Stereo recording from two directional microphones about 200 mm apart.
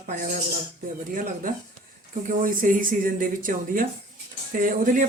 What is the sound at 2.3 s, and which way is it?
Speech, 40° right (ahead or behind).